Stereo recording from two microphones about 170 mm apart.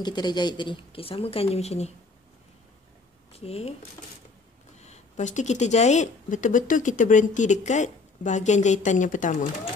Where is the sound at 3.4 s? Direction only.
35° left (ahead or behind).